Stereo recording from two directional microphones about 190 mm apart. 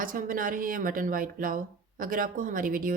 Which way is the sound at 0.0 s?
45° right (ahead or behind).